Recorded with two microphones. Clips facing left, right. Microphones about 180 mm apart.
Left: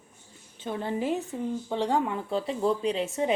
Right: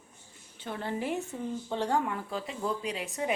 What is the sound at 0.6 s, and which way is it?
A woman's voice, 20° left (ahead or behind).